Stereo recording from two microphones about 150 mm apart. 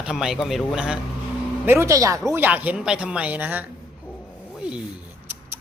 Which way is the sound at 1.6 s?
15° right (ahead or behind).